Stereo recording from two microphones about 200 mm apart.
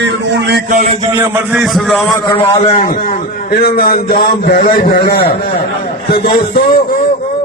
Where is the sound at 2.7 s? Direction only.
40° left (ahead or behind).